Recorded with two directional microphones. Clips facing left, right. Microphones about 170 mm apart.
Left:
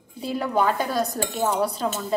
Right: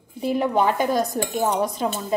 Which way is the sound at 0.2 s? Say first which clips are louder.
Right 3 dB; 15° right (ahead or behind).